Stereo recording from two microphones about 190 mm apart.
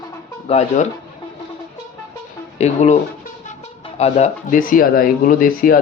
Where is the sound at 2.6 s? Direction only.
35° left (ahead or behind).